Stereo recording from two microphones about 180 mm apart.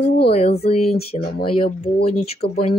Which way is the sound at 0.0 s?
65° left (ahead or behind).